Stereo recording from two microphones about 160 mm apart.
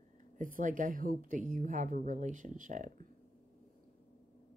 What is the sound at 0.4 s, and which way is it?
Speech, 55° right (ahead or behind).